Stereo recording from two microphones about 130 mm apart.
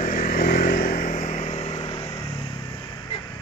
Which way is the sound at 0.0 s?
90° left.